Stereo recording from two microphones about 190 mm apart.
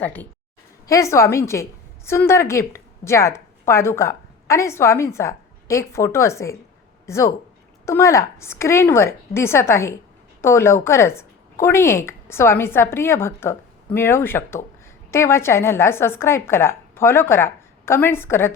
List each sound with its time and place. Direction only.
0.0 s a woman's voice: 10° left (ahead or behind)